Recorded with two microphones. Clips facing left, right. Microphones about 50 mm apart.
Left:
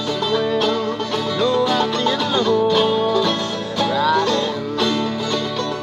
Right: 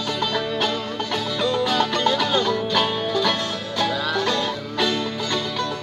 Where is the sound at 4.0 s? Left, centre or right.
Left.